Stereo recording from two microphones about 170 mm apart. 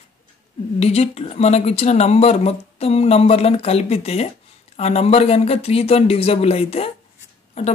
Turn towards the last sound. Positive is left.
turn(degrees=40)  # may be behind; listen again after turning